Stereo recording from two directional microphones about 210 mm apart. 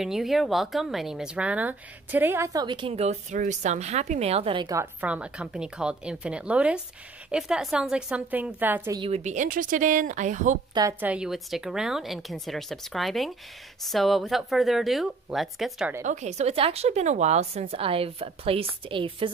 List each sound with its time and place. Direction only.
0.0 s speech: centre (ahead or behind); by 4.8 s 20° right (ahead or behind)
5.0 s a woman's voice: 5° right (ahead or behind)
9.0 s speech: 30° right (ahead or behind)
10.7 s a woman's voice: 15° right (ahead or behind)
16.0 s a woman's voice: 35° right (ahead or behind)